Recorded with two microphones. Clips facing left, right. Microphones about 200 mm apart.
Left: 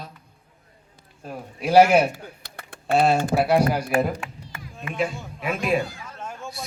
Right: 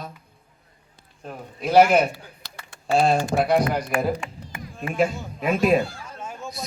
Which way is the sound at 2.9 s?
5° left (ahead or behind).